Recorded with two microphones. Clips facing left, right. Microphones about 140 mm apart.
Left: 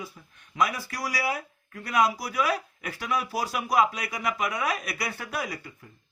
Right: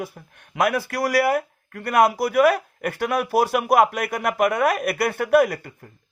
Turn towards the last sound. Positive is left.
turn(degrees=-55)  # may be behind; listen again after turning